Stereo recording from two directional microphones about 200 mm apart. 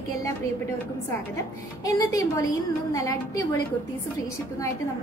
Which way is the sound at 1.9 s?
15° left (ahead or behind).